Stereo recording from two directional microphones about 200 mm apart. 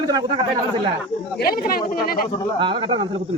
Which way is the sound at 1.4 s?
50° left (ahead or behind).